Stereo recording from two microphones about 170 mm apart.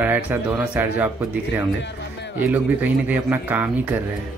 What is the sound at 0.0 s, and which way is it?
Speech, 10° right (ahead or behind).